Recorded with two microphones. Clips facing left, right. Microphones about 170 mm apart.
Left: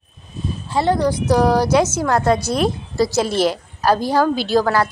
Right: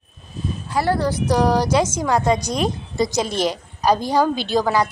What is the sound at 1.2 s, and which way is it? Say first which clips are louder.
Speech: left 2 dB; 15° right (ahead or behind).